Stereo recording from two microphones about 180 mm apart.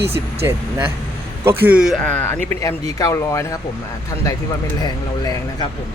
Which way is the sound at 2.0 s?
10° left (ahead or behind).